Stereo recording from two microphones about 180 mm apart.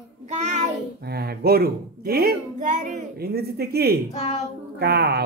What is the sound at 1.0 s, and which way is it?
Speech, 60° right (ahead or behind).